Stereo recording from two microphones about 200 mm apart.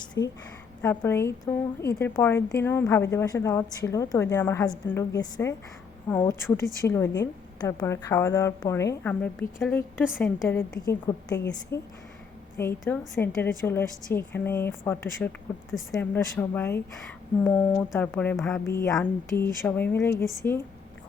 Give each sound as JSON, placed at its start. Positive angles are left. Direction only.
{"t": 0.0, "sound": "a sound", "side_deg": 20}
{"t": 0.8, "sound": "a woman's voice", "side_deg": 10}
{"t": 10.8, "sound": "a woman's voice", "side_deg": 20}